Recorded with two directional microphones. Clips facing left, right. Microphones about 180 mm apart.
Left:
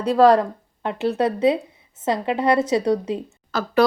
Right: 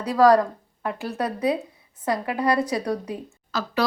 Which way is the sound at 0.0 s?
25° left (ahead or behind).